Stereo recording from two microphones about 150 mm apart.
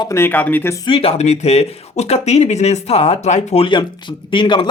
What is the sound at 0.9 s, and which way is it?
Speech, 40° left (ahead or behind).